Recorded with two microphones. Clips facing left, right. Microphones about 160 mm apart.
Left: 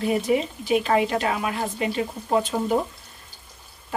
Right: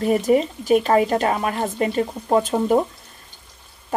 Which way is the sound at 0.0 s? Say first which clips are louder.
Right 5 dB; 45° right (ahead or behind).